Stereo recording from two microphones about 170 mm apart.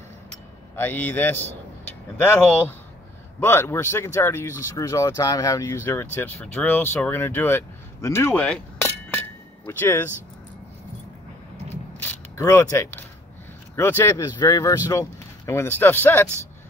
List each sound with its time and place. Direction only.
0.7 s speech: 10° left (ahead or behind)
12.0 s speech: 15° left (ahead or behind)